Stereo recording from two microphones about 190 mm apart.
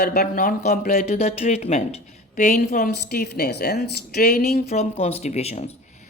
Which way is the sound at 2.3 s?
45° left (ahead or behind).